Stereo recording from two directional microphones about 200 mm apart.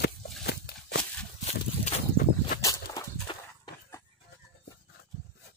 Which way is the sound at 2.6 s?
20° left (ahead or behind).